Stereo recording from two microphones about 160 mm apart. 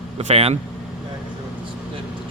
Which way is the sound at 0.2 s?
40° right (ahead or behind).